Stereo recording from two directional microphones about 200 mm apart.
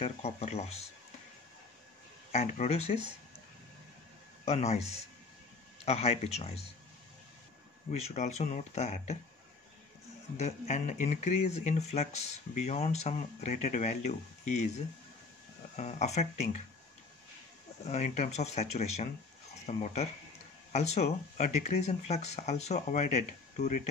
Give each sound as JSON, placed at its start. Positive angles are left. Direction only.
{"t": 0.0, "sound": "speech", "side_deg": 30}
{"t": 2.3, "sound": "speech", "side_deg": 35}
{"t": 4.5, "sound": "speech", "side_deg": 30}
{"t": 7.9, "sound": "speech", "side_deg": 35}
{"t": 10.3, "sound": "speech", "side_deg": 35}
{"t": 15.7, "sound": "speech", "side_deg": 35}
{"t": 17.8, "sound": "speech", "side_deg": 35}